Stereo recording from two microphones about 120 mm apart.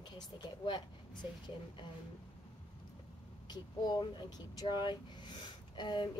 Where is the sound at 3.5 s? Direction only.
35° left (ahead or behind).